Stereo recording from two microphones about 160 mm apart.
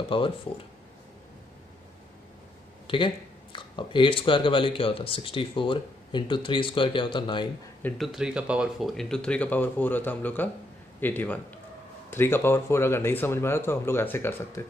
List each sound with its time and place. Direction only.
0.1 s speech: 35° left (ahead or behind)
3.5 s speech: 30° left (ahead or behind)
8.0 s speech: 5° right (ahead or behind); by 14.6 s 15° left (ahead or behind)